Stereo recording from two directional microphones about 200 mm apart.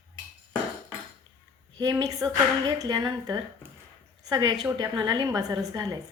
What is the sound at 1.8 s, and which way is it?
Speech, 15° right (ahead or behind).